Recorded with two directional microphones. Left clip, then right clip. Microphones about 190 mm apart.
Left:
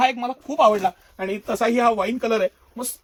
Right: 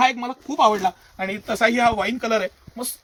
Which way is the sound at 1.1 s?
15° left (ahead or behind).